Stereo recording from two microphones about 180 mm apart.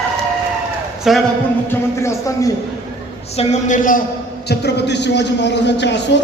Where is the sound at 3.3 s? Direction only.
40° left (ahead or behind).